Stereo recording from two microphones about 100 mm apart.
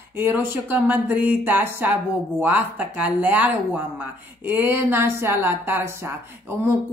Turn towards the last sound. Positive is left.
turn(degrees=-25)  # may be behind; listen again after turning